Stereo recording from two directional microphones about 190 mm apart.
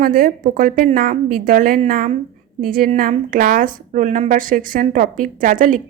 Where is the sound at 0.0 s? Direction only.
45° right (ahead or behind).